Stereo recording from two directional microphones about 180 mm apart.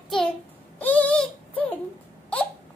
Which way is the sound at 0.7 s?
10° left (ahead or behind).